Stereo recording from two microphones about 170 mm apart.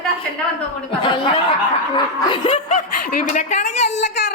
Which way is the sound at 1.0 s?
30° left (ahead or behind).